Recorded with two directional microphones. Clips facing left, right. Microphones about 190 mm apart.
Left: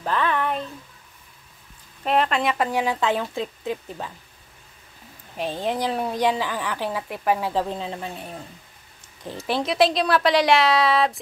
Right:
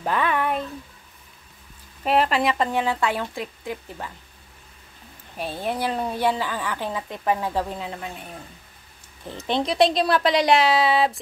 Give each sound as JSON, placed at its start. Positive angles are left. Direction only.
{"t": 0.0, "sound": "a sound", "side_deg": -10}
{"t": 2.0, "sound": "a woman's voice", "side_deg": -5}
{"t": 2.6, "sound": "speech", "side_deg": 15}
{"t": 5.7, "sound": "speech", "side_deg": 15}
{"t": 9.2, "sound": "speech", "side_deg": 10}
{"t": 9.7, "sound": "a woman's voice", "side_deg": 0}